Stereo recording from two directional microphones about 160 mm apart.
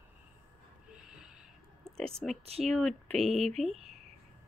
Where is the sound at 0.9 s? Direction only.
5° right (ahead or behind).